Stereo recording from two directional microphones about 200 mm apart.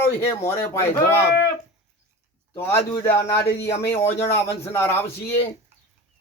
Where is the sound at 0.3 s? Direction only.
15° left (ahead or behind).